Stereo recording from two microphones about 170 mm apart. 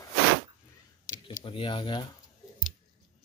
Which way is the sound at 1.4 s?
30° left (ahead or behind).